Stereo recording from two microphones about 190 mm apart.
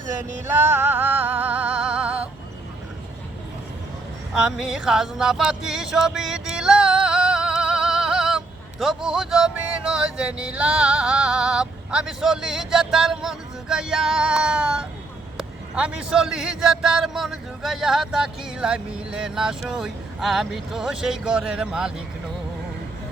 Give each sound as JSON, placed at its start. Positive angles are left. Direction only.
{"t": 0.0, "sound": "music", "side_deg": -40}
{"t": 0.4, "sound": "music", "side_deg": -10}
{"t": 4.4, "sound": "a sound", "side_deg": -5}
{"t": 15.4, "sound": "a man's voice", "side_deg": -5}